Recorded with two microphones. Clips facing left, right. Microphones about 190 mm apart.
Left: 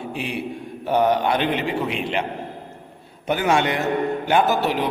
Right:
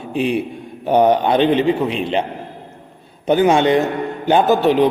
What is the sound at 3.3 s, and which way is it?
A man's voice, 20° right (ahead or behind).